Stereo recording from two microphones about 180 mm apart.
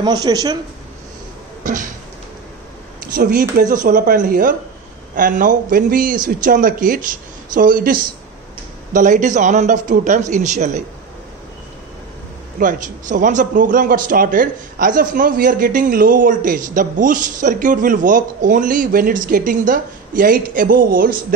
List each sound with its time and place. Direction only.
0.0 s speech: 20° right (ahead or behind)
1.6 s cough: 45° right (ahead or behind)
3.0 s a man's voice: 55° right (ahead or behind)
12.5 s a man's voice: 45° right (ahead or behind)